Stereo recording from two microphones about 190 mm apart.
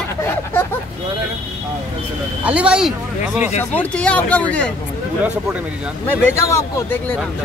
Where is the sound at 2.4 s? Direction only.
5° right (ahead or behind).